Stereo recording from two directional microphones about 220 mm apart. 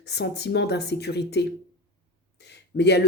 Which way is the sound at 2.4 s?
50° left (ahead or behind).